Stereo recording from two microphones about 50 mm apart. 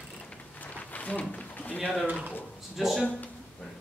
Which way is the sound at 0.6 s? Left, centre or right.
Left.